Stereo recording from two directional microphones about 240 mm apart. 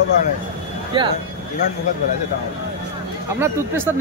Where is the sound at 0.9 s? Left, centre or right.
Right.